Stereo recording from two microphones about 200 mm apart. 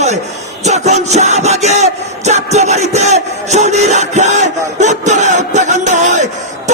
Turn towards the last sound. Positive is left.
turn(degrees=-35)  # may be behind; listen again after turning